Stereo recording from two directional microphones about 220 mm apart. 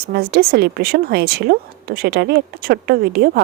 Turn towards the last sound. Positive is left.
turn(degrees=-45)  # may be behind; listen again after turning